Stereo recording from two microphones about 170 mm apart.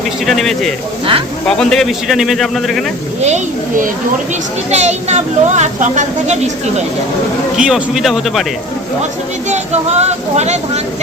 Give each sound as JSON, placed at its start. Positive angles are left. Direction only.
{"t": 0.3, "sound": "speech", "side_deg": 0}
{"t": 3.2, "sound": "a woman's voice", "side_deg": -40}
{"t": 7.5, "sound": "speech", "side_deg": -5}
{"t": 9.5, "sound": "speech", "side_deg": -40}